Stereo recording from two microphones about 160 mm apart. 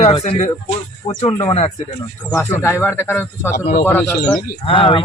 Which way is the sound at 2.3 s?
15° left (ahead or behind).